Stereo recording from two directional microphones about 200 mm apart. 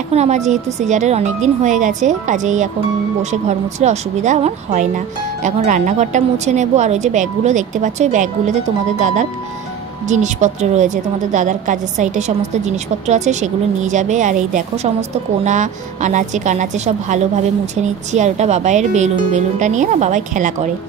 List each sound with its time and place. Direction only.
0.1 s speech: 35° right (ahead or behind)